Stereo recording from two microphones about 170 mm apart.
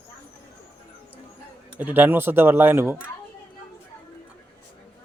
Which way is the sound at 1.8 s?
10° right (ahead or behind).